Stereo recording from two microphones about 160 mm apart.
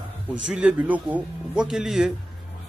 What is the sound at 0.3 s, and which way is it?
A man's voice, 5° right (ahead or behind).